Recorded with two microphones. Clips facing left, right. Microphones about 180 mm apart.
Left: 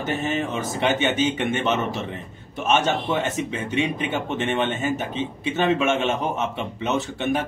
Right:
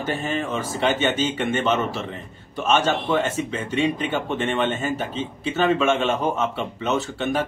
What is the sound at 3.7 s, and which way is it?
A man's voice, 15° left (ahead or behind).